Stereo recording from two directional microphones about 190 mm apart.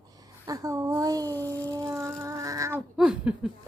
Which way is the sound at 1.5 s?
15° right (ahead or behind).